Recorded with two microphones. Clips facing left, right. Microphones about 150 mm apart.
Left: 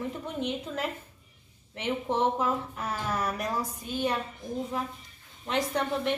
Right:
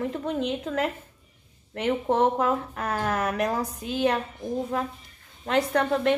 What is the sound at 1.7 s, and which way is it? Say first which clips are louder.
Speech: right 5 dB; 50° right (ahead or behind).